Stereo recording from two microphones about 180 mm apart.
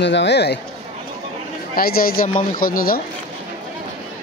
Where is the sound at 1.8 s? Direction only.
55° left (ahead or behind).